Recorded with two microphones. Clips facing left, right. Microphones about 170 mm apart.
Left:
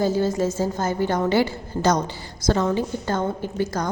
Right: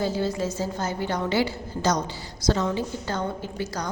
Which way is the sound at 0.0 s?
45° left (ahead or behind).